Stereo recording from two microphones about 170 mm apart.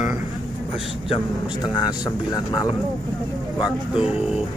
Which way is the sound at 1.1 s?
25° left (ahead or behind).